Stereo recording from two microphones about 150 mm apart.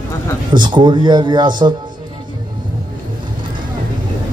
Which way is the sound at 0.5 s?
30° right (ahead or behind).